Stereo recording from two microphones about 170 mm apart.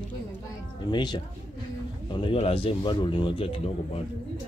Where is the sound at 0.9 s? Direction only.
25° left (ahead or behind).